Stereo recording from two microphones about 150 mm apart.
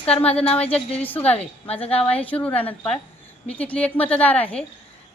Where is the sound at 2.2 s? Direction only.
10° left (ahead or behind).